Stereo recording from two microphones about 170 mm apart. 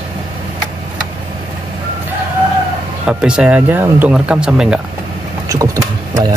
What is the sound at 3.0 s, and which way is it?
Speech, 5° right (ahead or behind).